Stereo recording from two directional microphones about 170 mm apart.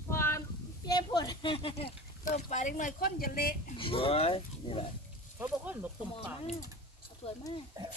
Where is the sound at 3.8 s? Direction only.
30° left (ahead or behind).